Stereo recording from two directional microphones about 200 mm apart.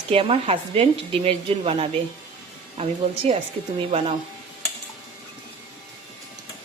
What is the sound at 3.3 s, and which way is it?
Speech, 25° right (ahead or behind).